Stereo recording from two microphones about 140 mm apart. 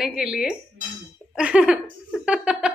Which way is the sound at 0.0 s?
5° right (ahead or behind).